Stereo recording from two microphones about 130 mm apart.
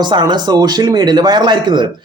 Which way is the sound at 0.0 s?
35° right (ahead or behind).